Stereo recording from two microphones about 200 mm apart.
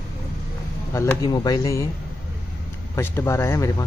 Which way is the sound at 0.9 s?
15° left (ahead or behind).